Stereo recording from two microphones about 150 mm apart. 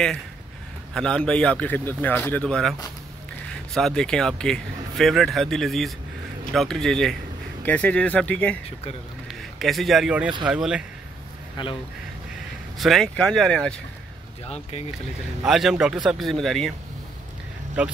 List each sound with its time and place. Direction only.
0.9 s a man's voice: 5° left (ahead or behind)
3.7 s a man's voice: 5° left (ahead or behind)
9.6 s speech: centre (ahead or behind)
11.6 s speech: 30° left (ahead or behind)
12.7 s speech: centre (ahead or behind)
15.4 s speech: centre (ahead or behind)
17.8 s speech: 10° right (ahead or behind)